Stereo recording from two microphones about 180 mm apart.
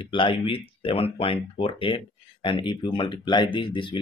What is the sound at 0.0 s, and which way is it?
Speech, 30° left (ahead or behind).